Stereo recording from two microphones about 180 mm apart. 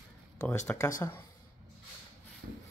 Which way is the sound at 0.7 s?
15° left (ahead or behind).